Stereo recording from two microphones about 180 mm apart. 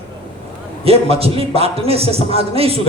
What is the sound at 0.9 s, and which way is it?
A man's voice, 35° right (ahead or behind).